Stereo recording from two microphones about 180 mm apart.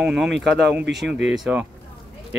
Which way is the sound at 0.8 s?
75° right (ahead or behind).